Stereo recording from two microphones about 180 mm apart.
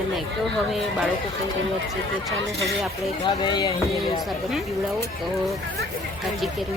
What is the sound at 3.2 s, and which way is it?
Speech, 25° left (ahead or behind).